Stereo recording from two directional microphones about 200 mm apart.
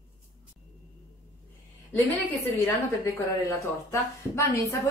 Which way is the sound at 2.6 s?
15° left (ahead or behind).